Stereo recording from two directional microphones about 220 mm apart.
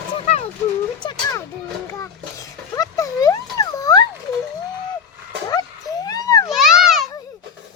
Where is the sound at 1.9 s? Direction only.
15° left (ahead or behind).